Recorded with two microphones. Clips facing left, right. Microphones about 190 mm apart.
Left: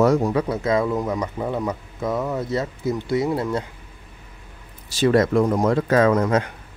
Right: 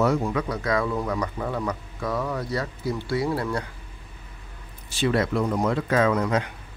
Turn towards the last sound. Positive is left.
turn(degrees=45)  # may be behind; listen again after turning